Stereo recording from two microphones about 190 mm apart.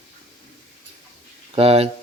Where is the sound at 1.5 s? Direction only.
30° right (ahead or behind).